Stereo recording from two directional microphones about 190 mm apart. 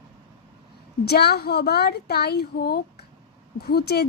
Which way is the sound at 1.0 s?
55° left (ahead or behind).